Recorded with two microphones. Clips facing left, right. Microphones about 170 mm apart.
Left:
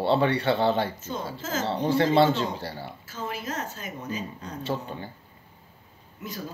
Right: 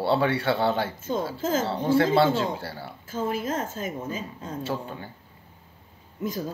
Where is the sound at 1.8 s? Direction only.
5° right (ahead or behind).